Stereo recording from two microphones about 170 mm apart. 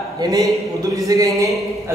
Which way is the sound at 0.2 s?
20° right (ahead or behind).